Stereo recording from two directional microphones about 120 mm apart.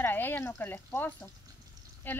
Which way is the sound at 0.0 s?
15° left (ahead or behind).